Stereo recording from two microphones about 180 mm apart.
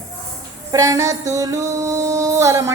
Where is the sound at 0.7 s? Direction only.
20° right (ahead or behind).